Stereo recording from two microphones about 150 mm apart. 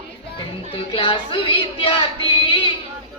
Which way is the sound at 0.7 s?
35° left (ahead or behind).